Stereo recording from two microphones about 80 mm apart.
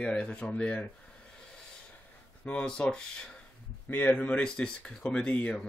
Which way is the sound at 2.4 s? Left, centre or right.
Centre.